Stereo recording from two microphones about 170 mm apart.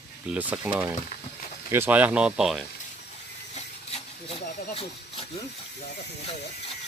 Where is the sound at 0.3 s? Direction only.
10° right (ahead or behind).